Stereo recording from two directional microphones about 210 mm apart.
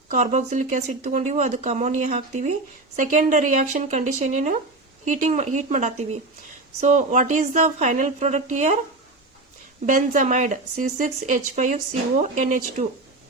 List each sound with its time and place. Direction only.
0.1 s speech: 35° right (ahead or behind)
9.8 s speech: 40° right (ahead or behind)